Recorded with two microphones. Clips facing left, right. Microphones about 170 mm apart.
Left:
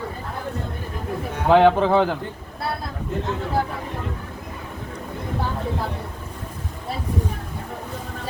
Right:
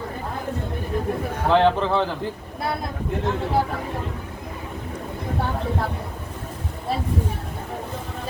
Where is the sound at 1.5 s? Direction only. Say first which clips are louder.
Left 3 dB; 15° left (ahead or behind).